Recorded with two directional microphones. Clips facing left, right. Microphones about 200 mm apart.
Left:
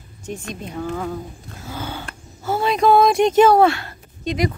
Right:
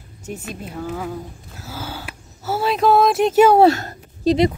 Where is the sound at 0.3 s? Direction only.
5° right (ahead or behind).